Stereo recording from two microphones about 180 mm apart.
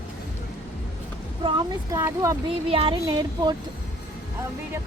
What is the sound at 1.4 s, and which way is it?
Speech, 30° right (ahead or behind).